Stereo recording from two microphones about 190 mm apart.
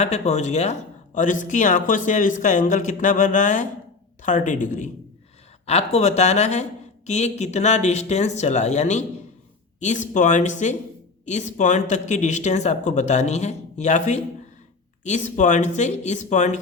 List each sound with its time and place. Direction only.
0.0 s speech: 35° left (ahead or behind)